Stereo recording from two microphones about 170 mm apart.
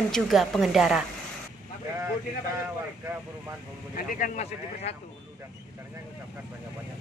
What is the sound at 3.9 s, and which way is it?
Speech, 50° left (ahead or behind).